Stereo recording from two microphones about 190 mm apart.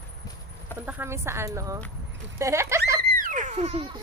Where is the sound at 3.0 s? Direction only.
45° right (ahead or behind); by 4.0 s 25° right (ahead or behind).